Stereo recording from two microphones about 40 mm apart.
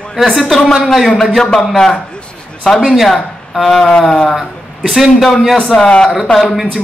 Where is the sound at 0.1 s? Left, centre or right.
Centre.